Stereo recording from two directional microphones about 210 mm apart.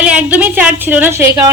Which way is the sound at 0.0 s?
5° right (ahead or behind).